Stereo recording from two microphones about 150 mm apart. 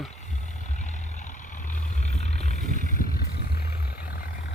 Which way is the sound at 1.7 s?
50° left (ahead or behind).